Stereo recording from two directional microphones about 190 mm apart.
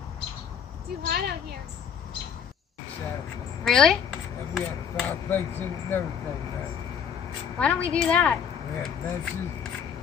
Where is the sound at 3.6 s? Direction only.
5° left (ahead or behind).